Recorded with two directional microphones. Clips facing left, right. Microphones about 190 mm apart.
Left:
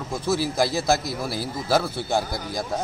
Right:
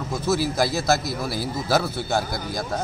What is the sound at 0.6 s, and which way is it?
Speech, centre (ahead or behind).